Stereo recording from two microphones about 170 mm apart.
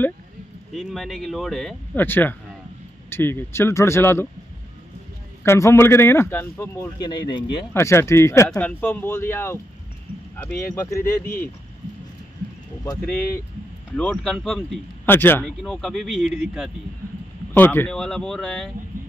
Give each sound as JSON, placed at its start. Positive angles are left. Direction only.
{"t": 0.7, "sound": "speech", "side_deg": 0}
{"t": 2.0, "sound": "speech", "side_deg": 10}
{"t": 5.4, "sound": "speech", "side_deg": 15}
{"t": 7.0, "sound": "speech", "side_deg": 25}
{"t": 7.7, "sound": "speech", "side_deg": 15}
{"t": 13.9, "sound": "speech", "side_deg": 5}
{"t": 15.0, "sound": "speech", "side_deg": 10}
{"t": 15.4, "sound": "speech", "side_deg": 0}
{"t": 17.6, "sound": "speech", "side_deg": 10}